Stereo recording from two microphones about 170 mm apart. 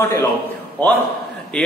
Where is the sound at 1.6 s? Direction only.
5° left (ahead or behind).